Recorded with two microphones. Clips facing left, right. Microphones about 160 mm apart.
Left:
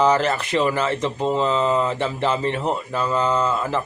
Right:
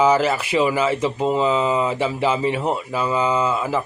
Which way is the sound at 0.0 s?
5° right (ahead or behind).